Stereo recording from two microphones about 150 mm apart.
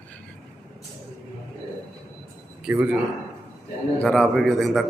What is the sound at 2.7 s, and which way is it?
Speech, 10° right (ahead or behind).